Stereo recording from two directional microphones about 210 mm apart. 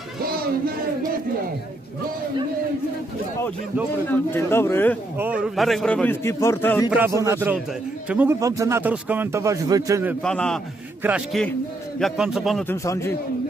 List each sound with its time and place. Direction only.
0.2 s a sound: 45° right (ahead or behind)
4.3 s speech: 10° left (ahead or behind)
5.1 s speech: 5° right (ahead or behind); by 6.9 s 10° left (ahead or behind)
6.9 s speech: 10° right (ahead or behind)
10.2 s speech: 5° left (ahead or behind)
12.6 s speech: 15° left (ahead or behind)